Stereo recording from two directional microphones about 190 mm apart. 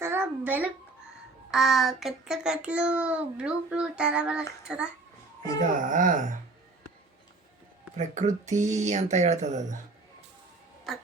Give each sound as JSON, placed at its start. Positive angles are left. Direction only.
{"t": 0.0, "sound": "a sound", "side_deg": -10}
{"t": 1.5, "sound": "a child's voice", "side_deg": 0}
{"t": 5.5, "sound": "speech", "side_deg": -45}
{"t": 7.9, "sound": "speech", "side_deg": -40}